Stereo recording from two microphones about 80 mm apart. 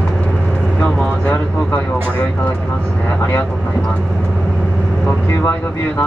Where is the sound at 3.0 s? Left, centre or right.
Left.